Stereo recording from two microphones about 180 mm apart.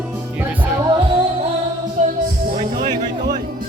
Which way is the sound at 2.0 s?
40° right (ahead or behind).